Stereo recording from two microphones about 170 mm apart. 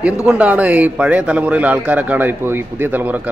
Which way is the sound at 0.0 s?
5° right (ahead or behind).